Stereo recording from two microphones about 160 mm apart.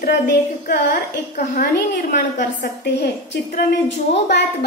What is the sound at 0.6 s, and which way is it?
A woman's voice, 65° left (ahead or behind).